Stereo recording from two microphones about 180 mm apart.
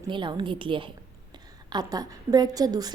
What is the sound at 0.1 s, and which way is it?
A woman's voice, 25° right (ahead or behind).